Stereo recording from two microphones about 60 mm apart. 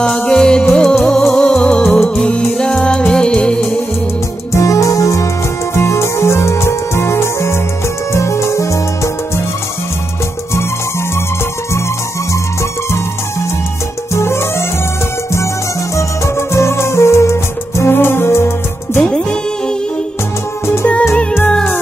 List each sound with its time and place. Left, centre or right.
0.2 s music: centre
4.5 s music: left
5.8 s music: left
14.1 s music: left
16.0 s music: left
18.9 s music: centre
21.1 s music: centre